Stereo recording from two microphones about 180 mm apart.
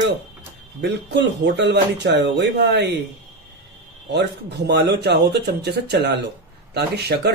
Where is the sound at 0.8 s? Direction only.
75° right (ahead or behind).